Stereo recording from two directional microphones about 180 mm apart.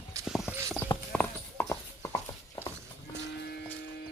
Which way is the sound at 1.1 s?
10° left (ahead or behind).